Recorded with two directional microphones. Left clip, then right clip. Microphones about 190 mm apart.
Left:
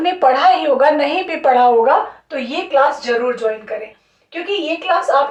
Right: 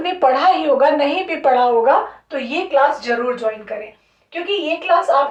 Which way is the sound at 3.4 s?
20° left (ahead or behind).